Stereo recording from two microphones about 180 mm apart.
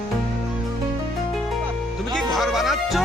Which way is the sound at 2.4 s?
Centre (ahead or behind).